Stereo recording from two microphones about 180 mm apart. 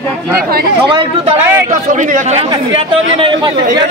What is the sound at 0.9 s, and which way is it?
Speech, 25° right (ahead or behind).